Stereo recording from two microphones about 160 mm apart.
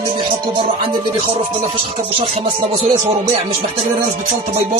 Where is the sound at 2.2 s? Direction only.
30° right (ahead or behind).